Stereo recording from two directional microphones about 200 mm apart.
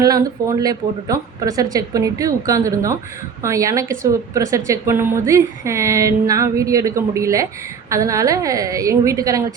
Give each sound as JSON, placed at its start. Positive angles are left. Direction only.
{"t": 0.0, "sound": "a woman's voice", "side_deg": -20}